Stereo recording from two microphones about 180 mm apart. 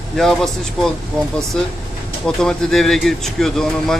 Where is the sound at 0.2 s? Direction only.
Centre (ahead or behind).